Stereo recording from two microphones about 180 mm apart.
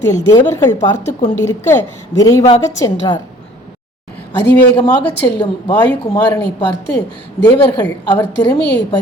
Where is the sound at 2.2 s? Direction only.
20° left (ahead or behind).